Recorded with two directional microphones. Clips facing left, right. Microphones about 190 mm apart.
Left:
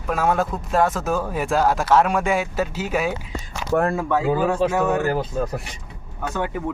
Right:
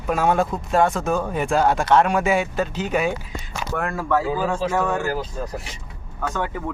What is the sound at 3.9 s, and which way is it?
Speech, 15° left (ahead or behind).